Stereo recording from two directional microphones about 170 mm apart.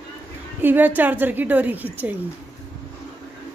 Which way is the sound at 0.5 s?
10° right (ahead or behind).